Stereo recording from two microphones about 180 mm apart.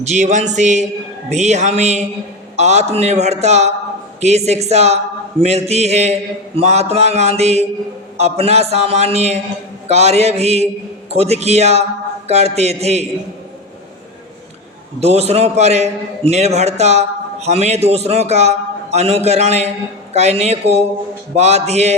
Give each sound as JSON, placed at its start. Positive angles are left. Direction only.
{"t": 0.0, "sound": "a man's voice", "side_deg": -40}
{"t": 15.0, "sound": "a man's voice", "side_deg": -35}